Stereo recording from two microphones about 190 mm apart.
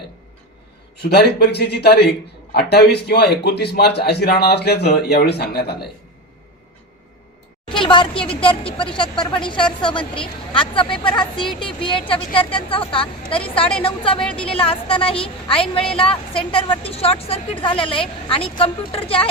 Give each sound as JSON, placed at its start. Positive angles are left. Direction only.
{"t": 0.9, "sound": "a man's voice", "side_deg": 60}
{"t": 7.7, "sound": "a woman's voice", "side_deg": 25}
{"t": 13.2, "sound": "a woman's voice", "side_deg": 5}
{"t": 13.8, "sound": "a woman's voice", "side_deg": 25}